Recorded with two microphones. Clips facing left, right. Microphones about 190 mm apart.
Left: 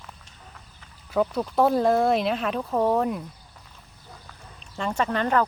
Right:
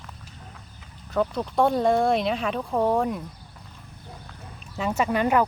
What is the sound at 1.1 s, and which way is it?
Speech, 5° left (ahead or behind).